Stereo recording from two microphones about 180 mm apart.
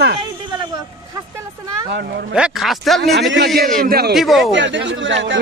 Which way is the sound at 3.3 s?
60° right (ahead or behind).